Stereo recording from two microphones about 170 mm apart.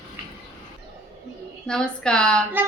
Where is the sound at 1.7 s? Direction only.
5° left (ahead or behind).